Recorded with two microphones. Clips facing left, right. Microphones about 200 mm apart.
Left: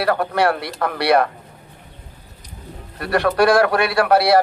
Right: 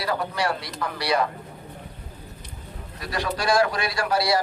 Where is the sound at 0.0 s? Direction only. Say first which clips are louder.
Left 8 dB; 60° left (ahead or behind).